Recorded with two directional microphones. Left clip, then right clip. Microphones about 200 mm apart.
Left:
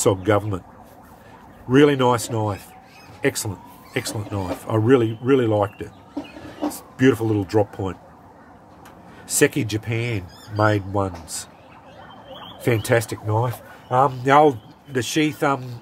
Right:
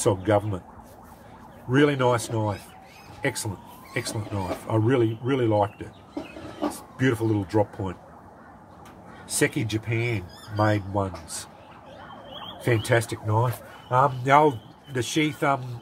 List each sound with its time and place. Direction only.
0.0 s speech: 50° left (ahead or behind)
1.7 s speech: 50° left (ahead or behind)
7.0 s speech: 50° left (ahead or behind)
9.3 s speech: 50° left (ahead or behind)
12.6 s speech: 45° left (ahead or behind)
13.4 s speech: 35° left (ahead or behind)